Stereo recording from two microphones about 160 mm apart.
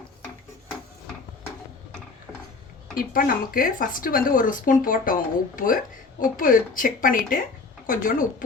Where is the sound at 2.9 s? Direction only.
60° left (ahead or behind).